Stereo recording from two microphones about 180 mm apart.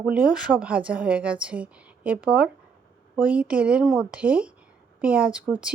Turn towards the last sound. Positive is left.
turn(degrees=-5)  # may be behind; listen again after turning